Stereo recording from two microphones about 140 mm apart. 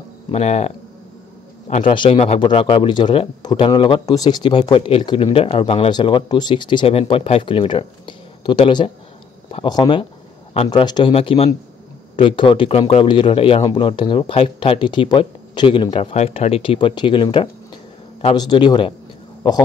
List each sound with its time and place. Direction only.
0.3 s a man's voice: 50° left (ahead or behind)
2.0 s speech: 45° left (ahead or behind)
11.1 s speech: 45° left (ahead or behind)